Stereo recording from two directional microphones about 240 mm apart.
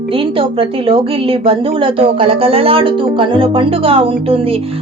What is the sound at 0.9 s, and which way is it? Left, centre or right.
Speech, right.